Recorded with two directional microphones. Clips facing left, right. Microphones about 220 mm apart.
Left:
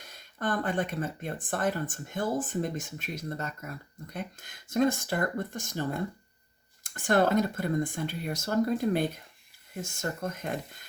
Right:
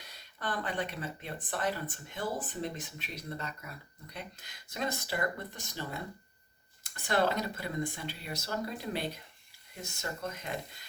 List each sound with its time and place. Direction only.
0.0 s speech: 50° left (ahead or behind)